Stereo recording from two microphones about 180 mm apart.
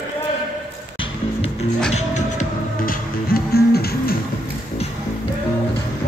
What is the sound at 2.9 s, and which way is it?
Music, 60° left (ahead or behind).